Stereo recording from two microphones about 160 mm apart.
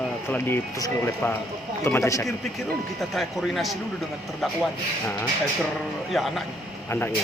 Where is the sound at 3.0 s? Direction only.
Centre (ahead or behind).